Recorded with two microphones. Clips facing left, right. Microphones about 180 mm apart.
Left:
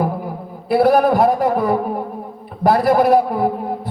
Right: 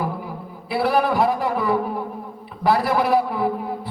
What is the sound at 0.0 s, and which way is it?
A man's voice, 45° left (ahead or behind).